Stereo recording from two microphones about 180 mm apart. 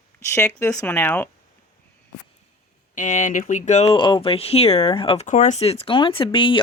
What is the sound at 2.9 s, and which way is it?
Speech, 45° left (ahead or behind).